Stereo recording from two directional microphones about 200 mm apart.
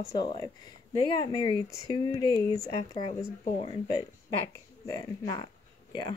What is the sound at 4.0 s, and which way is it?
Speech, 20° left (ahead or behind).